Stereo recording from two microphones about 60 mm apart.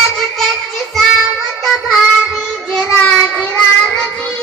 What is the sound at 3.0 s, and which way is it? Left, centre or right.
Child singing, centre.